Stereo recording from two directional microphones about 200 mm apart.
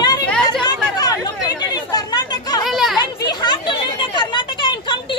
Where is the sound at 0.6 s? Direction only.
20° left (ahead or behind).